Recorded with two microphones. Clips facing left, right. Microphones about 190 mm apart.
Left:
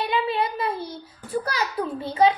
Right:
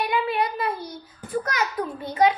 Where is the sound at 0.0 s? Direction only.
25° left (ahead or behind).